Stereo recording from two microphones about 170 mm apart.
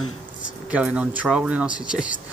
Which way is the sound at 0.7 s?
5° right (ahead or behind).